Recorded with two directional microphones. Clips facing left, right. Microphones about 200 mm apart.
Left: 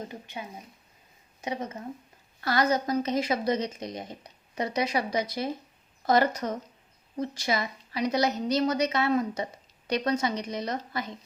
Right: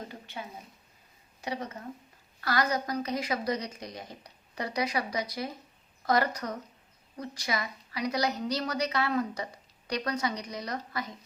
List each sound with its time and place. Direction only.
0.1 s a woman's voice: 20° left (ahead or behind)